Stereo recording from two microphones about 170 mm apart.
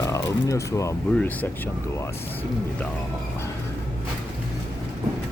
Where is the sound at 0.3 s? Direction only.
20° left (ahead or behind).